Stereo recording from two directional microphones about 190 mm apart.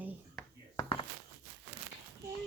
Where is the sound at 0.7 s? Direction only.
25° left (ahead or behind).